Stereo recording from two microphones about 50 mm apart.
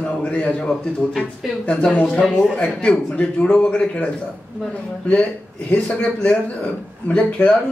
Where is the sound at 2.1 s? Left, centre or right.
Centre.